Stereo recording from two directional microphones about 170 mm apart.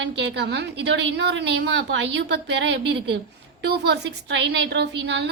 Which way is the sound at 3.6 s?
75° right (ahead or behind).